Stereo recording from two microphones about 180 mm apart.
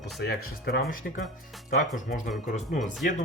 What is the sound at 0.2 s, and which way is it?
Speech, 60° left (ahead or behind).